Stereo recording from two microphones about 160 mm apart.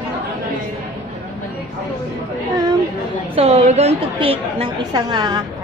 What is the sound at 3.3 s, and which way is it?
A woman's voice, 40° right (ahead or behind).